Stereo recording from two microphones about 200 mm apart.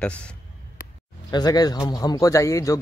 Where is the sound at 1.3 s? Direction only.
20° left (ahead or behind).